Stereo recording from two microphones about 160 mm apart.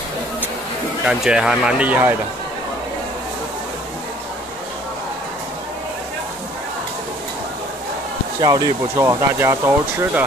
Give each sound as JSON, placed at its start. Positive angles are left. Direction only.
{"t": 1.0, "sound": "speech", "side_deg": -5}
{"t": 8.4, "sound": "speech", "side_deg": -25}